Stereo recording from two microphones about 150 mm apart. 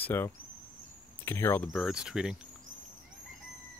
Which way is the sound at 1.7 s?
Centre (ahead or behind).